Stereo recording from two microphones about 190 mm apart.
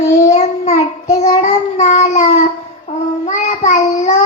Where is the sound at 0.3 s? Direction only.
35° left (ahead or behind).